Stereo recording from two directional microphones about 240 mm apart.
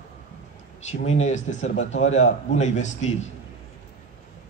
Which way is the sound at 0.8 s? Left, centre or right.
Left.